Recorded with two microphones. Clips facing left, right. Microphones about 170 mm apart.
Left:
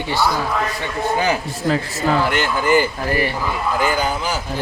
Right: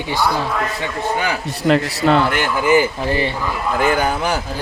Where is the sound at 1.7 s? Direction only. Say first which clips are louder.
Right 4 dB; 70° right (ahead or behind).